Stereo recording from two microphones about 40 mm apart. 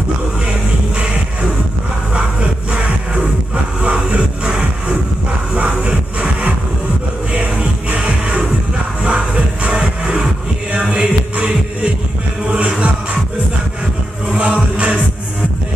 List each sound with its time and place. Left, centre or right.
3.8 s music: right
9.0 s music: right
14.3 s music: right